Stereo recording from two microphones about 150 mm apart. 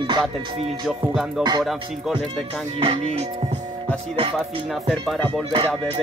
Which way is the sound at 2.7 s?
40° right (ahead or behind).